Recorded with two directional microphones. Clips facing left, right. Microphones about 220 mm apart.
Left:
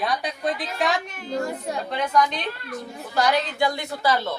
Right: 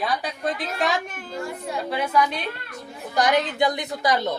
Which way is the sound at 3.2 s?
20° right (ahead or behind).